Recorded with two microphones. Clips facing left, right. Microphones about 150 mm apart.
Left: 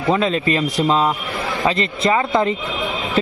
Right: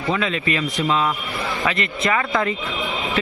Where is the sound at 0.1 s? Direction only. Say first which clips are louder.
Left 5 dB; 35° left (ahead or behind).